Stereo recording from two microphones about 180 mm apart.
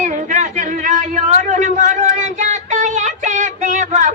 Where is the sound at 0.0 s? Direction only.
40° right (ahead or behind).